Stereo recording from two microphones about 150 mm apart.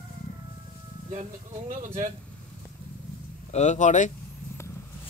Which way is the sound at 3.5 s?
50° left (ahead or behind).